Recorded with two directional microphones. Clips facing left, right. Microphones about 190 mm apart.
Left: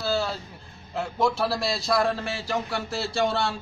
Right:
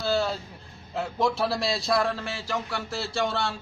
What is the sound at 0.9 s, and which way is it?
A man's voice, centre (ahead or behind).